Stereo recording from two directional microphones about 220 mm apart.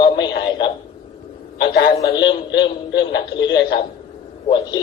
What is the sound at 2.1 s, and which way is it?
Speech, 20° left (ahead or behind).